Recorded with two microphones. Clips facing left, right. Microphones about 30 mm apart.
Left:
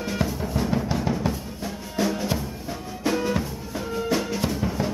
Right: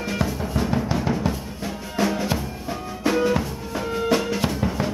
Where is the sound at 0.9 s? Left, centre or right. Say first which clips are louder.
Right 2 dB; centre.